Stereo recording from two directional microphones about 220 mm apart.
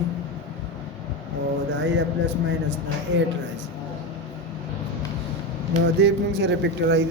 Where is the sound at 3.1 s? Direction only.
55° right (ahead or behind).